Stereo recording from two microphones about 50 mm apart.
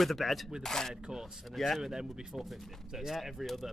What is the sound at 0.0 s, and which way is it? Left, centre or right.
Speech, centre.